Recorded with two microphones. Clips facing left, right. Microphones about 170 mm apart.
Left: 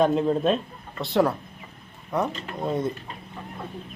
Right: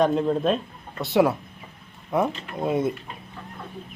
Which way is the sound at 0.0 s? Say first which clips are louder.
Even; centre (ahead or behind).